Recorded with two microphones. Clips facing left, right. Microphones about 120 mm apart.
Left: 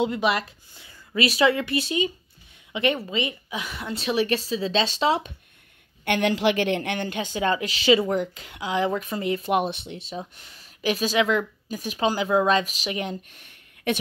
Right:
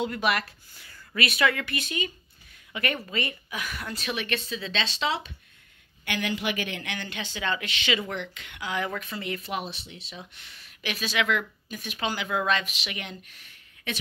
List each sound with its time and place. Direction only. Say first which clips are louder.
0.0 s a woman's voice: left 4 dB; 25° left (ahead or behind); by 5.3 s 45° left (ahead or behind)
6.0 s speech: left 8 dB; 60° left (ahead or behind); by 9.5 s 35° left (ahead or behind)
9.5 s speech: left 10 dB; 55° left (ahead or behind); by 13.2 s 40° left (ahead or behind)